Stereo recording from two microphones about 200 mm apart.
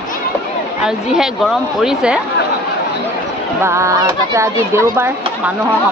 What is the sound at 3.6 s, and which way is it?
Speech, 15° right (ahead or behind).